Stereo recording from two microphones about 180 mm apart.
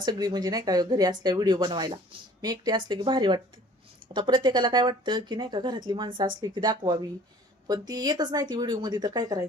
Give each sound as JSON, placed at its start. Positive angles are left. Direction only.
{"t": 0.0, "sound": "speech", "side_deg": -20}